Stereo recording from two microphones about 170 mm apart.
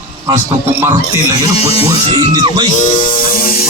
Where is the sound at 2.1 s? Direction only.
25° right (ahead or behind).